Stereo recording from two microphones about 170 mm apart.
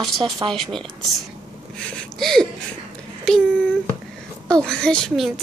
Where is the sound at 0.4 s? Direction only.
30° right (ahead or behind).